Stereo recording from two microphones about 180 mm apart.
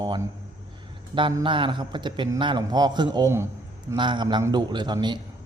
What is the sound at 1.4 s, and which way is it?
A man's voice, 30° right (ahead or behind).